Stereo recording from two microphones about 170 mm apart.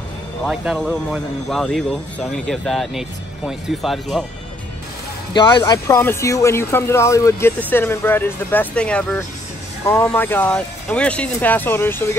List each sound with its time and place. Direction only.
0.5 s speech: centre (ahead or behind)
5.3 s speech: 25° left (ahead or behind)